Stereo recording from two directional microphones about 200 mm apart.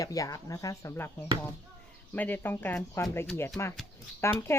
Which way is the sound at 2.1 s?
10° left (ahead or behind).